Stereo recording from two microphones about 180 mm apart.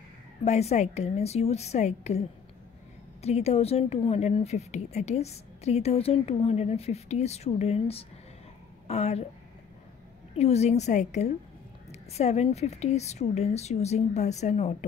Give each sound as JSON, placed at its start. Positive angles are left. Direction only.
{"t": 0.5, "sound": "a woman's voice", "side_deg": 35}
{"t": 10.3, "sound": "a woman's voice", "side_deg": 35}